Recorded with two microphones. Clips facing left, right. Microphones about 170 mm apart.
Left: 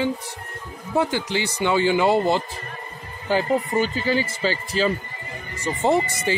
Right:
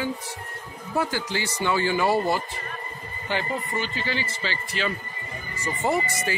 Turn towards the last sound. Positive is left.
turn(degrees=25)  # may be behind; listen again after turning